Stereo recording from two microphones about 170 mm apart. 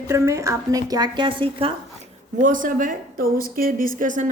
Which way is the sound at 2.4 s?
50° right (ahead or behind).